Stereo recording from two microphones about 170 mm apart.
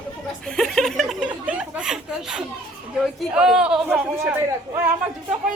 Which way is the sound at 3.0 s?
Centre (ahead or behind).